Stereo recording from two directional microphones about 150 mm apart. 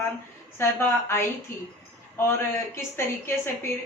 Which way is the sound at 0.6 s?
15° left (ahead or behind).